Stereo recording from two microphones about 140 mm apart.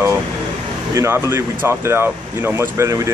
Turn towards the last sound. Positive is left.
turn(degrees=-20)  # may be behind; listen again after turning